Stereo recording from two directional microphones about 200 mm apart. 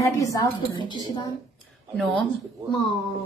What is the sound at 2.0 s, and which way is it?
Speech, 5° left (ahead or behind).